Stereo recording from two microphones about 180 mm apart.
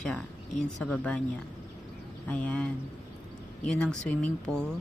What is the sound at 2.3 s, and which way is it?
Speech, 5° left (ahead or behind).